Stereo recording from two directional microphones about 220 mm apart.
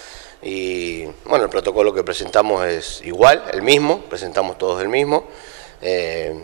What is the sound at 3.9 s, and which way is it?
Speech, 30° right (ahead or behind).